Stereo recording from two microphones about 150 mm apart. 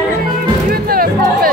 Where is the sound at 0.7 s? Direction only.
80° right.